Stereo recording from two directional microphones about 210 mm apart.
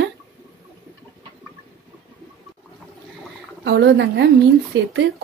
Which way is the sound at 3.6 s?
55° right (ahead or behind).